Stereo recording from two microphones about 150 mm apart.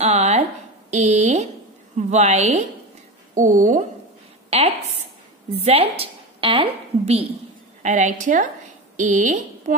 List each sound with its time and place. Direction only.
0.0 s a woman's voice: 45° right (ahead or behind)
4.5 s a woman's voice: 45° right (ahead or behind)
7.8 s a woman's voice: 55° right (ahead or behind)